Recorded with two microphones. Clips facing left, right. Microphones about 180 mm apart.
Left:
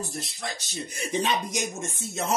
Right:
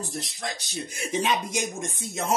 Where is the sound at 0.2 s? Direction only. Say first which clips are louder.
Right 1 dB; 15° right (ahead or behind).